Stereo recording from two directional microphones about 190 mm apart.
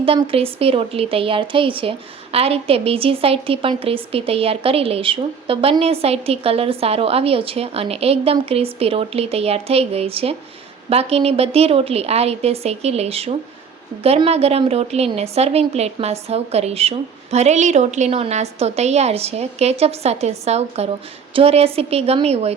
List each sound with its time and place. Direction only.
0.0 s speech: 30° right (ahead or behind)